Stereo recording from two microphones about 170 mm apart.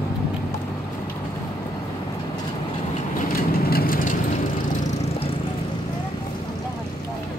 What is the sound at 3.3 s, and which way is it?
Vehicle, 60° left (ahead or behind).